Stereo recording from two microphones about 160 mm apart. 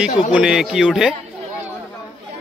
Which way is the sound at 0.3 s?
5° right (ahead or behind).